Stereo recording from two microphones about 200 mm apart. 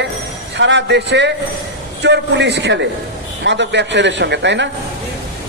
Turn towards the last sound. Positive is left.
turn(degrees=-60)  # may be behind; listen again after turning